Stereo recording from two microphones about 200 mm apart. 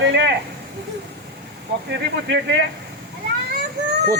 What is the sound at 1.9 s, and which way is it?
Speech, 60° right (ahead or behind).